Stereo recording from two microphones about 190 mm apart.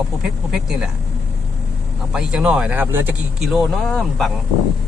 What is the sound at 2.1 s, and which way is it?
Speech, 5° right (ahead or behind).